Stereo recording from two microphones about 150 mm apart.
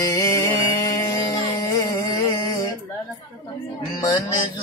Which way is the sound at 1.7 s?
20° left (ahead or behind).